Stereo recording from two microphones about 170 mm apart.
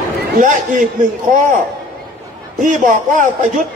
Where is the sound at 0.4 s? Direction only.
50° right (ahead or behind).